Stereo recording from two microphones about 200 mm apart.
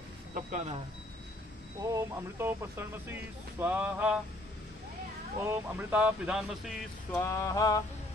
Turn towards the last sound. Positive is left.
turn(degrees=20)  # may be behind; listen again after turning